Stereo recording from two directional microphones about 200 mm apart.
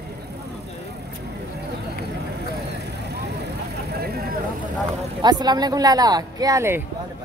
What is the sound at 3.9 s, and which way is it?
Vehicle, 50° right (ahead or behind).